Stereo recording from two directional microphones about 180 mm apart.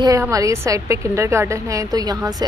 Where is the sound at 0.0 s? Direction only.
20° right (ahead or behind).